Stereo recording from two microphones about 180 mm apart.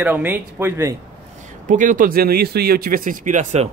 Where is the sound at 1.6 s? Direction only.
45° right (ahead or behind).